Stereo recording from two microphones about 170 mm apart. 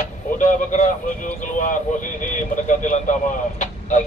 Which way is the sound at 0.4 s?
50° left (ahead or behind).